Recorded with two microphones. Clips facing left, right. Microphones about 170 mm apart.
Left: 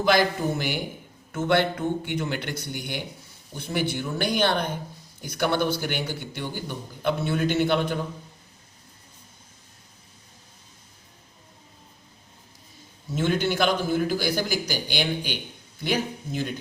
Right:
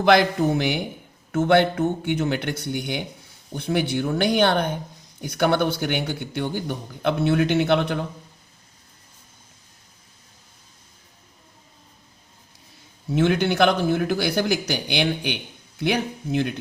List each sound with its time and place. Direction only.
0.0 s a man's voice: 60° right (ahead or behind)
13.1 s a man's voice: 65° right (ahead or behind)